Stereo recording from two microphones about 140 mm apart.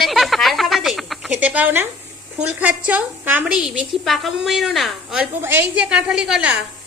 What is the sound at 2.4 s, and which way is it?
A woman's voice, 10° right (ahead or behind).